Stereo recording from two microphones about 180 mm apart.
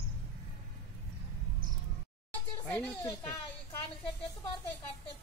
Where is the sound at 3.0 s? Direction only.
15° left (ahead or behind).